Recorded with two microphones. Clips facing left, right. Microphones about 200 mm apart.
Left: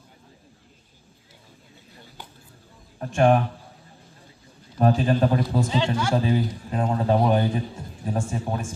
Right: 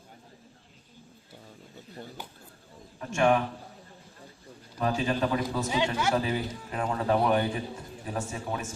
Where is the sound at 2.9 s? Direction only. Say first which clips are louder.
Left 5 dB; 40° left (ahead or behind).